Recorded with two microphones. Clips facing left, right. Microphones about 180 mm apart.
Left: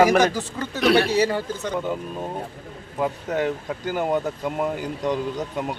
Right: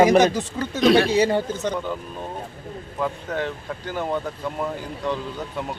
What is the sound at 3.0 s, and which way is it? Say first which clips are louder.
Speech: left 3 dB; 15° left (ahead or behind).